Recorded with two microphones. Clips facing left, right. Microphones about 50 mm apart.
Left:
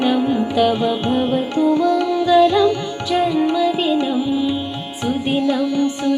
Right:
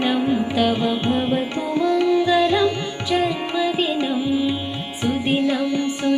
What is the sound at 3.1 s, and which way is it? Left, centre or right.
Music, centre.